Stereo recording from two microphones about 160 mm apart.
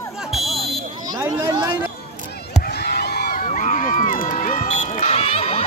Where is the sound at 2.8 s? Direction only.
90° left.